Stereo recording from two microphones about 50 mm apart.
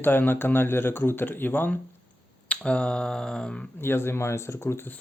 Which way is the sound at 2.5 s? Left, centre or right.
Left.